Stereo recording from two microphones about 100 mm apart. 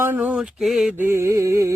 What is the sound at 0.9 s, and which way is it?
Speech, 25° right (ahead or behind).